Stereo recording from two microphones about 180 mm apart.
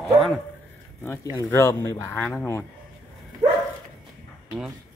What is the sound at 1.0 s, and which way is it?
Speech, 15° left (ahead or behind).